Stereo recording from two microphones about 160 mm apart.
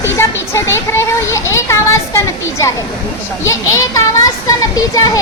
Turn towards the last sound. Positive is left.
turn(degrees=20)  # may be behind; listen again after turning